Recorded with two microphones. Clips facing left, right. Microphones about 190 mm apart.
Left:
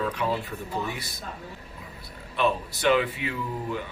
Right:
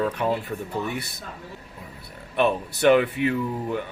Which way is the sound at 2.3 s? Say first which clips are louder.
Right 3 dB; 55° right (ahead or behind).